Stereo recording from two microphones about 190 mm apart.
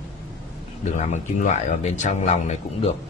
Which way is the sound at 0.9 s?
40° left (ahead or behind).